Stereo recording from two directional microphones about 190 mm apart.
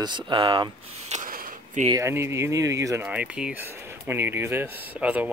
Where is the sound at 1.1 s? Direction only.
40° right (ahead or behind).